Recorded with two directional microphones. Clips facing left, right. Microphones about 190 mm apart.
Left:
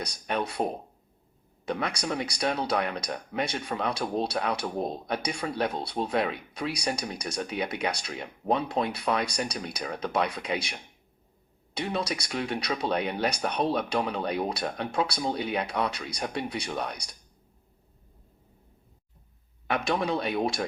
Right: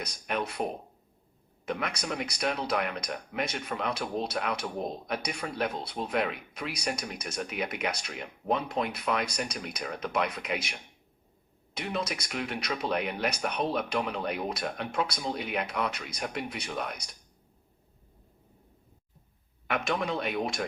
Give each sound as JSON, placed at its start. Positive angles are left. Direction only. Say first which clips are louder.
{"t": 0.0, "sound": "speech", "louder": "left 2 dB", "side_deg": 35}
{"t": 1.6, "sound": "speech", "louder": "left 3 dB", "side_deg": 35}
{"t": 11.8, "sound": "speech", "louder": "left 3 dB", "side_deg": 30}
{"t": 19.6, "sound": "speech", "louder": "left 3 dB", "side_deg": 35}